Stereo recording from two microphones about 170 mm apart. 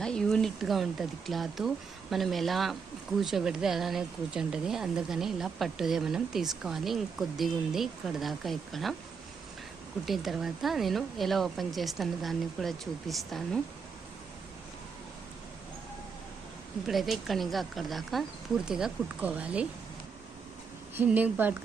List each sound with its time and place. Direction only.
0.0 s speech: 5° left (ahead or behind)
10.1 s speech: centre (ahead or behind)
16.8 s speech: centre (ahead or behind)
20.9 s speech: 10° right (ahead or behind)